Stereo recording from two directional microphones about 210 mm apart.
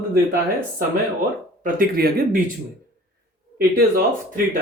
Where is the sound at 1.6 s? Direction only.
45° right (ahead or behind).